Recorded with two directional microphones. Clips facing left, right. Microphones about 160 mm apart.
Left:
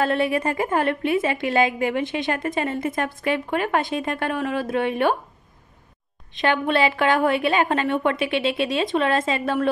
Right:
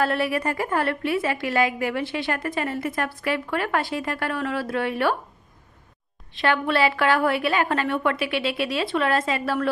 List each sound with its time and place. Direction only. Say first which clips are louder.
0.0 s a woman's voice: left 2 dB; 25° left (ahead or behind)
6.3 s a woman's voice: left 1 dB; 20° left (ahead or behind)